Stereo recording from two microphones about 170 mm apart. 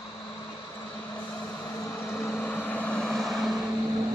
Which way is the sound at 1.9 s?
15° left (ahead or behind).